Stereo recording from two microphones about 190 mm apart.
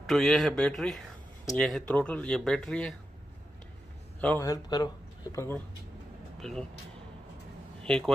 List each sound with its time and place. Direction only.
0.0 s speech: centre (ahead or behind)
4.2 s a man's voice: 5° left (ahead or behind)
4.5 s speech: 20° left (ahead or behind)
6.4 s speech: centre (ahead or behind)
7.8 s speech: 5° left (ahead or behind)